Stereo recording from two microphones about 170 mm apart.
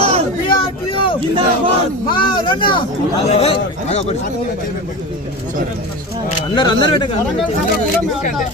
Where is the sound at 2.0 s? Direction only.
30° left (ahead or behind).